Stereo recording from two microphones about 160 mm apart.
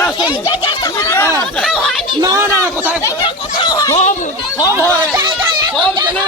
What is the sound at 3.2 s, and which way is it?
Speech, 25° left (ahead or behind).